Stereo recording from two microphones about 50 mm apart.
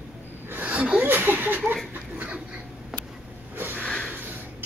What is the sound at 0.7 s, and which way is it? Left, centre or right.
Speech, right.